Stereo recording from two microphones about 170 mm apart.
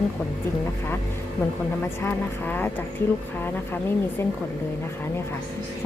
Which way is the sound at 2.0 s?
10° left (ahead or behind).